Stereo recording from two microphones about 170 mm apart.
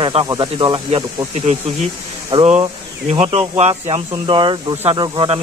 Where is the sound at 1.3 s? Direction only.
40° right (ahead or behind).